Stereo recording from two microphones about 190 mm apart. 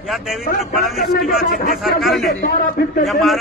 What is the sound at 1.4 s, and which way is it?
Speech, 50° left (ahead or behind).